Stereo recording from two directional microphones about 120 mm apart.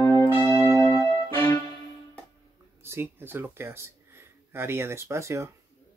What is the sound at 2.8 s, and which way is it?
Speech, 20° right (ahead or behind).